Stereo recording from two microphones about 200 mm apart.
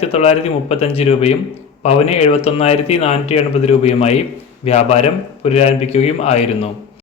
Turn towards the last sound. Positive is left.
turn(degrees=30)  # may be behind; listen again after turning